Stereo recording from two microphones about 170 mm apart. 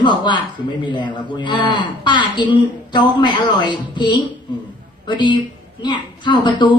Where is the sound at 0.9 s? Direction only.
25° left (ahead or behind).